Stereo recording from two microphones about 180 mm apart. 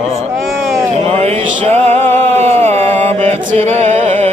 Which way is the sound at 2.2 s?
35° right (ahead or behind).